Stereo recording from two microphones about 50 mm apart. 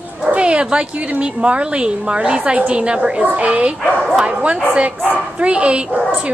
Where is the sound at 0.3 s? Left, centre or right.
Right.